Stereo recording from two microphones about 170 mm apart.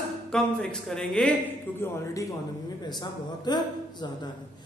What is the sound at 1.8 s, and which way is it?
Speech, 20° left (ahead or behind).